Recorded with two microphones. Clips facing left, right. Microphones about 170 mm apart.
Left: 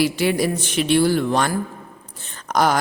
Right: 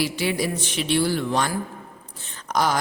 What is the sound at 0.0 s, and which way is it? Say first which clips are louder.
A woman's voice: left 5 dB; 50° left (ahead or behind).